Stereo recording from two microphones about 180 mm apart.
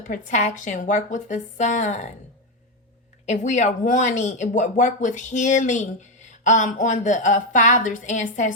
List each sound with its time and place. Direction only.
0.0 s speech: 45° left (ahead or behind)
3.2 s speech: 40° left (ahead or behind)